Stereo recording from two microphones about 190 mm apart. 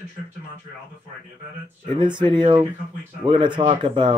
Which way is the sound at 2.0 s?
25° right (ahead or behind).